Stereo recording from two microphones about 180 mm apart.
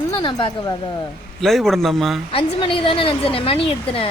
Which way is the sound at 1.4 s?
Centre (ahead or behind).